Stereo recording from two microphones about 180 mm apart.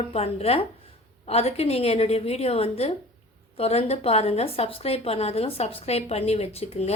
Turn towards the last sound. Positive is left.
turn(degrees=35)  # may be behind; listen again after turning